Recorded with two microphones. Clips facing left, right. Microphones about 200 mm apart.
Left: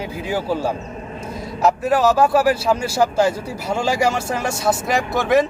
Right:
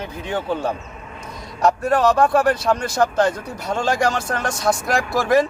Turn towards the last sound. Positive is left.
turn(degrees=0)  # may be behind; listen again after turning